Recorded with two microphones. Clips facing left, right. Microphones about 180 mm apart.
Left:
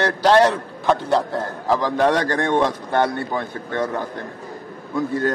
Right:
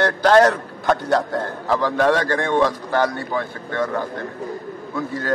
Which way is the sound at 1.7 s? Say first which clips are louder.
Even; 15° left (ahead or behind).